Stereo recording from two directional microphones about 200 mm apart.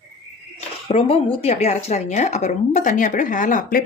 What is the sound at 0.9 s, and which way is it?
Speech, 30° left (ahead or behind).